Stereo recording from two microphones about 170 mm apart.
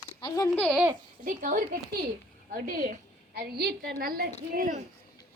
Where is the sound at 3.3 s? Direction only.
65° right (ahead or behind).